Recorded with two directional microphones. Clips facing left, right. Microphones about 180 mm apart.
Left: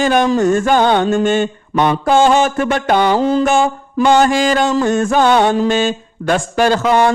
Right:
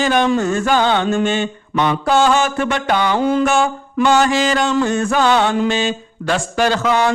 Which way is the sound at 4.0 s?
50° left (ahead or behind).